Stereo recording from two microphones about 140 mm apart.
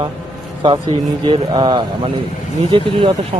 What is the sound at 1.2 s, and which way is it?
Speech, 35° right (ahead or behind).